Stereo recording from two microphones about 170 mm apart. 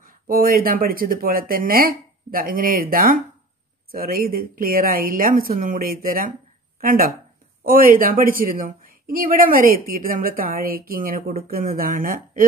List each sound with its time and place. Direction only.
0.0 s a woman's voice: 55° right (ahead or behind)